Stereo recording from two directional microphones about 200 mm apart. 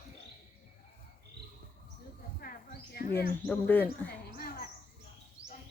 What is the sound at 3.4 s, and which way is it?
Speech, 10° left (ahead or behind).